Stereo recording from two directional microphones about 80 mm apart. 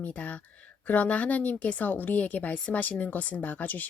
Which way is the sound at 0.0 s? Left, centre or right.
Centre.